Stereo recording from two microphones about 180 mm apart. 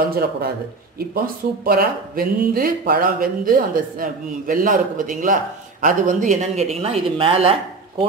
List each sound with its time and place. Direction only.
0.9 s speech: 55° right (ahead or behind); by 7.5 s 30° right (ahead or behind)